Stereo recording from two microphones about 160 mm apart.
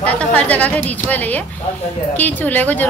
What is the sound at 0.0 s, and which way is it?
A woman's voice, 10° left (ahead or behind).